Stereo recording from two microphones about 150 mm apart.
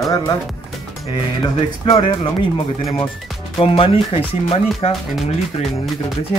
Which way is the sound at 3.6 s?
35° left (ahead or behind).